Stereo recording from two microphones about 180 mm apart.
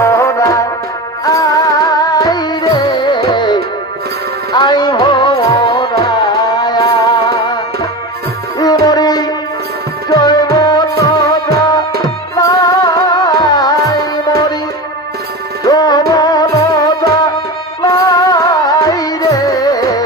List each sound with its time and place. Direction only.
0.0 s music: 15° left (ahead or behind)
8.8 s music: 20° left (ahead or behind)
12.4 s music: 20° left (ahead or behind)
15.6 s music: 20° left (ahead or behind)